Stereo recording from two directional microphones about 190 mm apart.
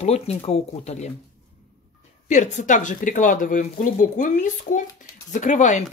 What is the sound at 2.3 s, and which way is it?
Speech, 40° left (ahead or behind).